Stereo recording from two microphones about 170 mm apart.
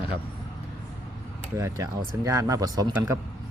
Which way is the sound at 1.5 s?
20° right (ahead or behind).